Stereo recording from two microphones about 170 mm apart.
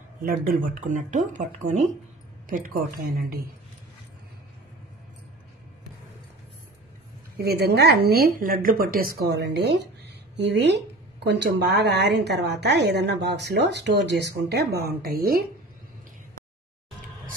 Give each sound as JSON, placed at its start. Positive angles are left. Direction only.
{"t": 0.2, "sound": "a woman's voice", "side_deg": -55}
{"t": 7.3, "sound": "a woman's voice", "side_deg": -70}